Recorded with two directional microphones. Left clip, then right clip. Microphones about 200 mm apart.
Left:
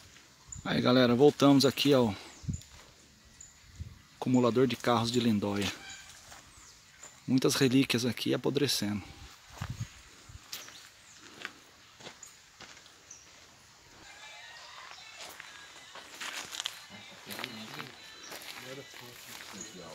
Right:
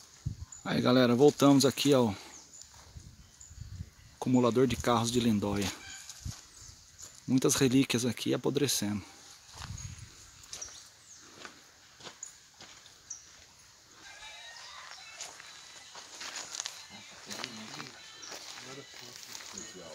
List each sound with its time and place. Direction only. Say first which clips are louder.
0.7 s speech: even; 5° right (ahead or behind)
4.2 s speech: even; 10° right (ahead or behind)
7.2 s speech: even; 5° right (ahead or behind)
10.5 s a sound: even; 20° left (ahead or behind)
16.3 s walk: left 2 dB; 10° right (ahead or behind)